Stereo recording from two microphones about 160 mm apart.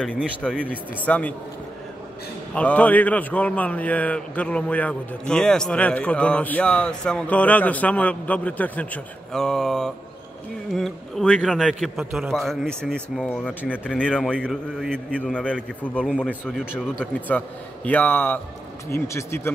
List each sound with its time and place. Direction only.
0.0 s a man's voice: 5° left (ahead or behind)
2.5 s a man's voice: 10° left (ahead or behind)
17.3 s a man's voice: 10° left (ahead or behind)